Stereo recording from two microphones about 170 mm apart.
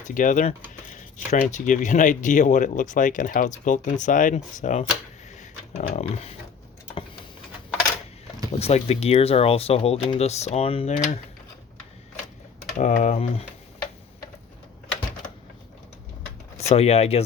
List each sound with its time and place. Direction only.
0.0 s speech: 50° left (ahead or behind)
8.5 s speech: 40° left (ahead or behind)
12.7 s speech: 45° left (ahead or behind)
16.6 s speech: 35° left (ahead or behind)